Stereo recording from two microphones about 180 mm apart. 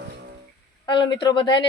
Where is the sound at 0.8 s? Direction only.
25° left (ahead or behind).